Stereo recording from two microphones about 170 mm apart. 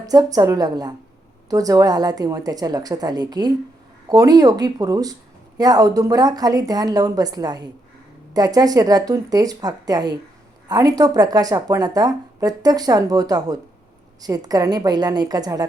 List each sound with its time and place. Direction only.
0.0 s speech: 20° right (ahead or behind)